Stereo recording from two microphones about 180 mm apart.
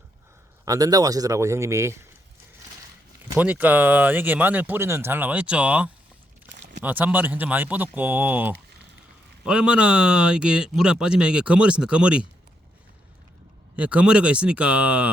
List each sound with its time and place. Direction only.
0.6 s speech: 20° right (ahead or behind)
3.3 s speech: 10° right (ahead or behind)
13.7 s speech: 5° right (ahead or behind)